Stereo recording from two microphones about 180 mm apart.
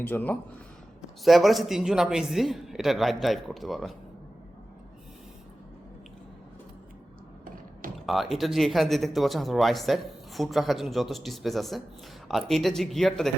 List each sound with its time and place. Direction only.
0.0 s speech: 10° left (ahead or behind)
1.2 s speech: centre (ahead or behind)
8.0 s speech: centre (ahead or behind)